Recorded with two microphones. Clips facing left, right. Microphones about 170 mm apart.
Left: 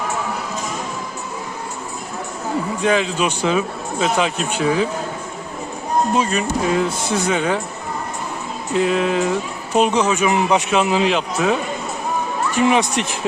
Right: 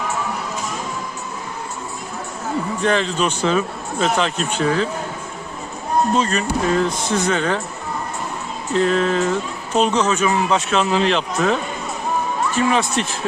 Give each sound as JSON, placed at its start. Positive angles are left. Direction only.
{"t": 2.8, "sound": "speech", "side_deg": 10}
{"t": 6.1, "sound": "speech", "side_deg": 10}
{"t": 8.7, "sound": "speech", "side_deg": 10}